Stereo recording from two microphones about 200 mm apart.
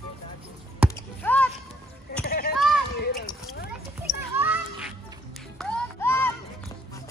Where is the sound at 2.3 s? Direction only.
50° left (ahead or behind).